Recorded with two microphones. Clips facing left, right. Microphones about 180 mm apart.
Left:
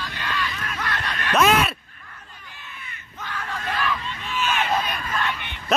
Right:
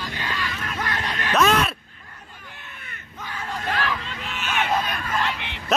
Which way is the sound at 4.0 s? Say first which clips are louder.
Left 5 dB; 75° right (ahead or behind).